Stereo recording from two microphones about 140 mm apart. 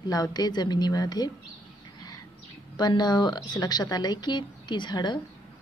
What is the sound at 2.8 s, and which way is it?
Speech, 30° left (ahead or behind).